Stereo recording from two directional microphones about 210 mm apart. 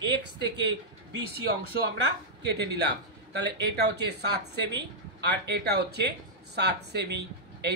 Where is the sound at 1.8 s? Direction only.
55° right (ahead or behind).